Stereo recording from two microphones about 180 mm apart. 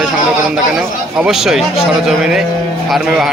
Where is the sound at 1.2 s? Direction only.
Centre (ahead or behind).